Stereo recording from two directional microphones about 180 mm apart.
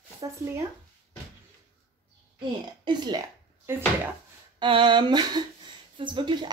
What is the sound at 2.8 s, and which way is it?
Speech, 25° right (ahead or behind).